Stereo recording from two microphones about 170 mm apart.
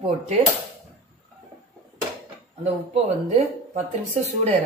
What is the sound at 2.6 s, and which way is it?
Speech, 40° right (ahead or behind).